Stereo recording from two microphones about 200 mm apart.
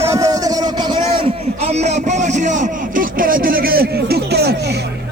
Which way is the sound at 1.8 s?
35° right (ahead or behind).